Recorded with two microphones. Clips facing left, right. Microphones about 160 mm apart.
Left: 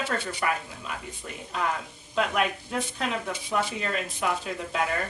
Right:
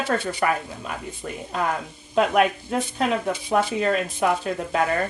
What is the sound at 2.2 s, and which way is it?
A woman's voice, 50° right (ahead or behind).